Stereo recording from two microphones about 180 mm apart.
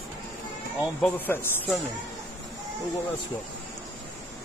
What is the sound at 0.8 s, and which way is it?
Speech, 10° left (ahead or behind).